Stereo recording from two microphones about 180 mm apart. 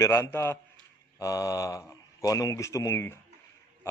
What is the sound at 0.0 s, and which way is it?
Speech, 15° left (ahead or behind).